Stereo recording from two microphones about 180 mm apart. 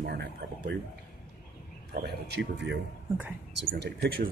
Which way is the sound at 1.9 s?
65° right (ahead or behind).